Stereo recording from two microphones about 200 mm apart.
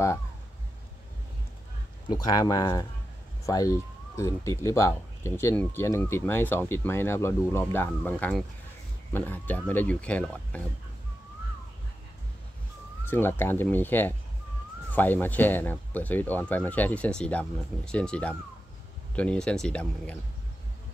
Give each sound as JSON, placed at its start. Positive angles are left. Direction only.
{"t": 2.0, "sound": "speech", "side_deg": 20}
{"t": 13.0, "sound": "speech", "side_deg": 10}